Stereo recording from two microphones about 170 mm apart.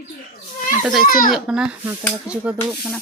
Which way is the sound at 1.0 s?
55° left (ahead or behind).